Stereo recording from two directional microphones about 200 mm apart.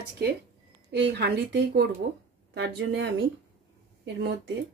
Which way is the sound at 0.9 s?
55° right (ahead or behind).